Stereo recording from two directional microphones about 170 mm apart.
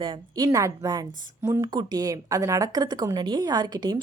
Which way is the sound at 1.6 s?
25° right (ahead or behind).